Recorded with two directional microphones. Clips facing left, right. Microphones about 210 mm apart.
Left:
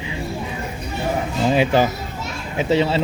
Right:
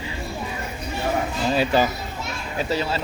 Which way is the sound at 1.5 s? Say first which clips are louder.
Left 3 dB; 15° left (ahead or behind).